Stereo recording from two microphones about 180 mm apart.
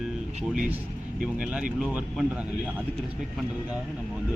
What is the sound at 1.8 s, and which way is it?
Speech, 5° right (ahead or behind).